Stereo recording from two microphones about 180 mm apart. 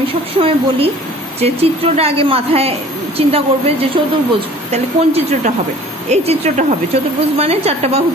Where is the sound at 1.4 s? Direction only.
35° right (ahead or behind).